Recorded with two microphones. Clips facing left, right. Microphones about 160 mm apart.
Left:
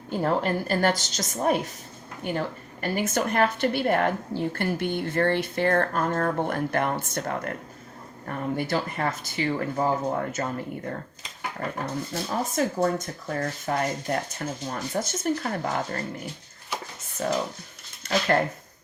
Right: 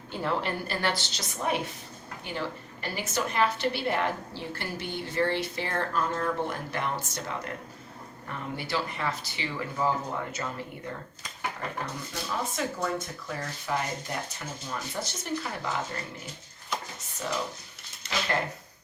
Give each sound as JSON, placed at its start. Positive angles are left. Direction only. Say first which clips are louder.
{"t": 0.1, "sound": "a woman's voice", "louder": "left 6 dB", "side_deg": 45}
{"t": 12.1, "sound": "a woman's voice", "louder": "left 5 dB", "side_deg": 45}